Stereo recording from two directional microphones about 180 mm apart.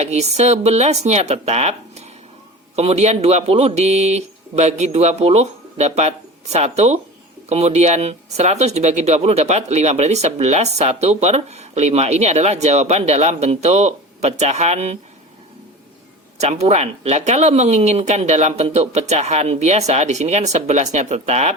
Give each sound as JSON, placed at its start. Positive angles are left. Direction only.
{"t": 0.0, "sound": "speech", "side_deg": -40}
{"t": 16.4, "sound": "speech", "side_deg": -40}